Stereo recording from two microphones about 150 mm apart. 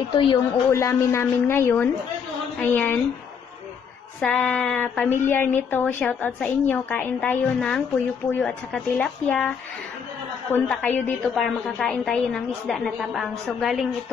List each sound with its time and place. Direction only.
0.1 s a woman's voice: 35° left (ahead or behind)
0.7 s speech: 20° left (ahead or behind)
4.2 s speech: 5° left (ahead or behind)
10.5 s a woman's voice: 10° left (ahead or behind)